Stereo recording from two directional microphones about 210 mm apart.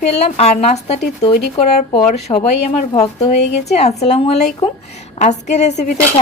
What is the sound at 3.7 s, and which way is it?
A woman's voice, 30° left (ahead or behind).